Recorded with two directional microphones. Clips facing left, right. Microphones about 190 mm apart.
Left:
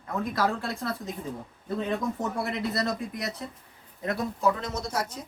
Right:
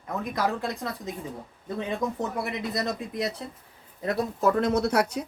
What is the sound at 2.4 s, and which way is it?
Speech, 15° right (ahead or behind).